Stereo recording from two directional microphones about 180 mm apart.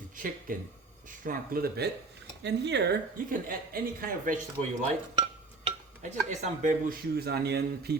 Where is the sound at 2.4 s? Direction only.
70° right (ahead or behind); by 4.4 s 50° right (ahead or behind).